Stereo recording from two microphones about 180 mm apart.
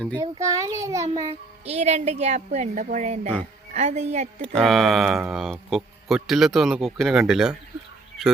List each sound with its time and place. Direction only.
0.2 s a child's voice: 15° right (ahead or behind)
1.3 s a woman's voice: 35° right (ahead or behind)
4.4 s speech: centre (ahead or behind)